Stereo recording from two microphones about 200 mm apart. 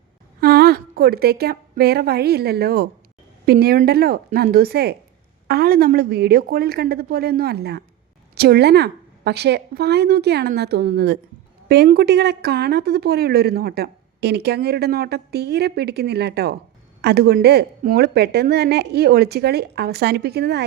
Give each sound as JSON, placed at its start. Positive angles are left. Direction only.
{"t": 0.3, "sound": "a woman's voice", "side_deg": -50}